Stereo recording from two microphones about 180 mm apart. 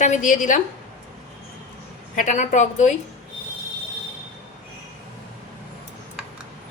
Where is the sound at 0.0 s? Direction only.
45° left (ahead or behind).